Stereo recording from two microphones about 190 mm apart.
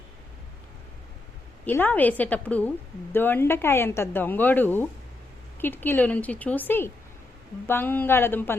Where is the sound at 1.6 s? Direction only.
10° left (ahead or behind).